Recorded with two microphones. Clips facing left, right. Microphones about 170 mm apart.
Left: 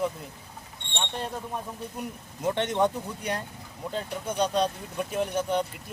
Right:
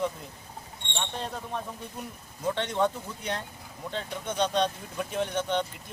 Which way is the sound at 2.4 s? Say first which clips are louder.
Left 2 dB; 20° left (ahead or behind).